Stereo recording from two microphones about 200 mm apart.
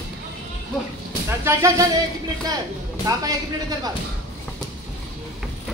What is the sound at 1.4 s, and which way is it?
Speech, 15° right (ahead or behind).